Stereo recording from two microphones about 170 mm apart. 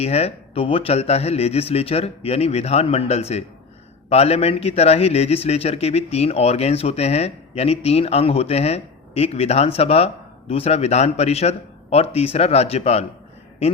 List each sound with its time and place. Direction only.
0.0 s a man's voice: 40° left (ahead or behind)